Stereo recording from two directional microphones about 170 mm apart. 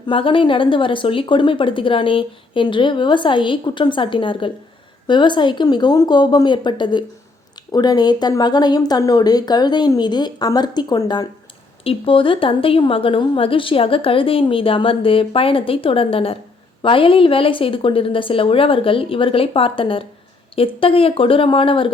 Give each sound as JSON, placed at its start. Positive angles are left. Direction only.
{"t": 0.1, "sound": "a woman's voice", "side_deg": 30}